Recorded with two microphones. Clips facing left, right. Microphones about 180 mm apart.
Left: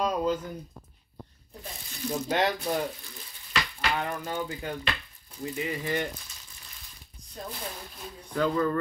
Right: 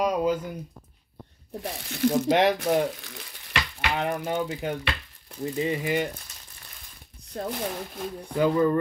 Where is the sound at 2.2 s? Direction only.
15° right (ahead or behind).